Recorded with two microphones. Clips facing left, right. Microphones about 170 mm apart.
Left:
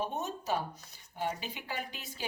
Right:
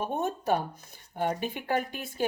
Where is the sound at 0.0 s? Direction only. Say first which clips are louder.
Right 6 dB; 55° right (ahead or behind).